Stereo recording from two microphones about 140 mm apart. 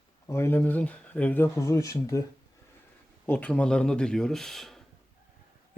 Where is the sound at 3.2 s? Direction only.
10° left (ahead or behind).